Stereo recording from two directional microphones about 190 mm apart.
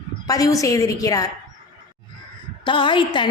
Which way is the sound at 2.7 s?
25° left (ahead or behind).